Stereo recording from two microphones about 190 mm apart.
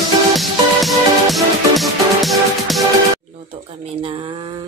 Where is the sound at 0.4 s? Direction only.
Centre (ahead or behind).